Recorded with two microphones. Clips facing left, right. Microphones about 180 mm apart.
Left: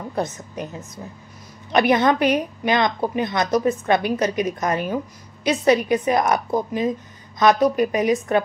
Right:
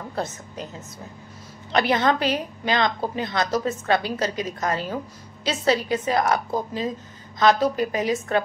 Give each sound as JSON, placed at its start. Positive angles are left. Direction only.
{"t": 0.1, "sound": "a woman's voice", "side_deg": 20}